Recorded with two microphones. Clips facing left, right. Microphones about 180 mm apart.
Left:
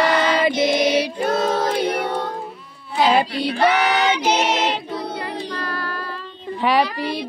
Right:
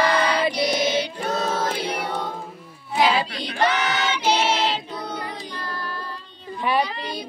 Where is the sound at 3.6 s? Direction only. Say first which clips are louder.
Left 5 dB; 60° left (ahead or behind).